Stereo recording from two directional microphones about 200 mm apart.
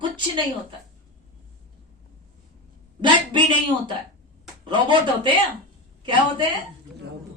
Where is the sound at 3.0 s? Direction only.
25° right (ahead or behind).